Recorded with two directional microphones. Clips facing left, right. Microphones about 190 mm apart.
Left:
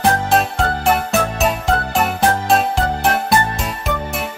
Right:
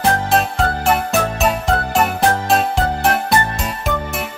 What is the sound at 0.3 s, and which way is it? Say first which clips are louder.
Music: even; centre (ahead or behind).